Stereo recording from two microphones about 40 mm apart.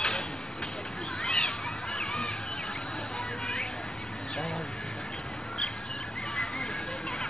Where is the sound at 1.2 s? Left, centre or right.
Centre.